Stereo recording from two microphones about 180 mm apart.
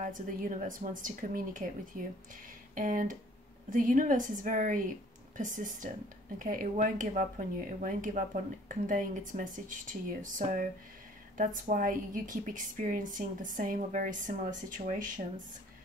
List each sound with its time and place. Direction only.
0.0 s speech: 50° right (ahead or behind)
2.7 s speech: 50° right (ahead or behind)